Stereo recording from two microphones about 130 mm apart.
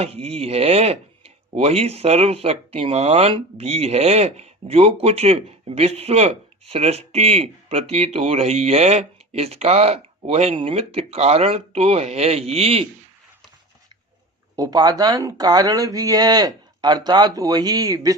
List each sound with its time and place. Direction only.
0.0 s speech: 50° right (ahead or behind)
14.5 s speech: 30° right (ahead or behind)